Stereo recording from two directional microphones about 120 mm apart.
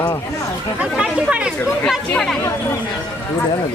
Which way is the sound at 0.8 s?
10° right (ahead or behind).